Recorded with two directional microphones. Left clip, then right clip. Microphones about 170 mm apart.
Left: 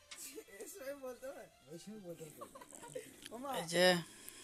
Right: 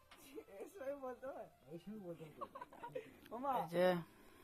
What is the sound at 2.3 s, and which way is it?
Speech, 30° left (ahead or behind).